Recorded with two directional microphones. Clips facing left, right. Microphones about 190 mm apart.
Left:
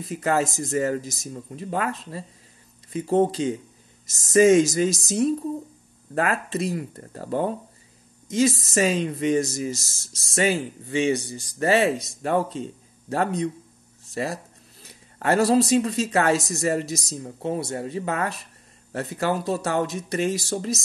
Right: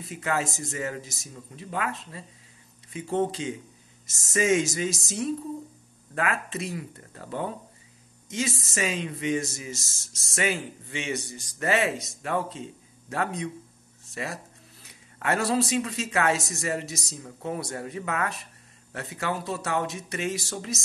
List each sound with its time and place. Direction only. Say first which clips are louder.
0.0 s speech: left 6 dB; 40° left (ahead or behind)